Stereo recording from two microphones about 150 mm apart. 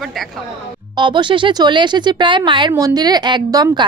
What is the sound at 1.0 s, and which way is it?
Speech, 30° right (ahead or behind).